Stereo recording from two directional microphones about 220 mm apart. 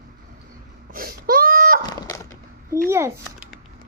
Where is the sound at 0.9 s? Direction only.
40° right (ahead or behind).